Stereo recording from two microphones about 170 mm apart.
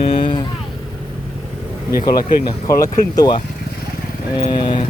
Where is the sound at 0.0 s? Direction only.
30° left (ahead or behind).